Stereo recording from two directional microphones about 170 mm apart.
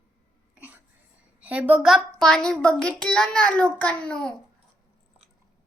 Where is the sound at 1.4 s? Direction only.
10° right (ahead or behind).